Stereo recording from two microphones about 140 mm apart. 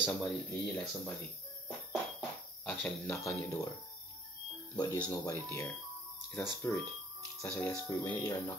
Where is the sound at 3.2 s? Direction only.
20° left (ahead or behind).